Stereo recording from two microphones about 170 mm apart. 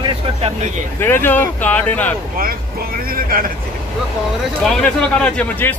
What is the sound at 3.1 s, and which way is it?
Speech, 60° right (ahead or behind).